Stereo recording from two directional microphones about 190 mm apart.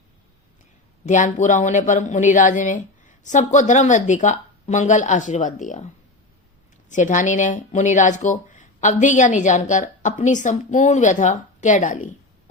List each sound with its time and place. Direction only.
1.0 s speech: 40° left (ahead or behind)
6.9 s speech: 40° left (ahead or behind)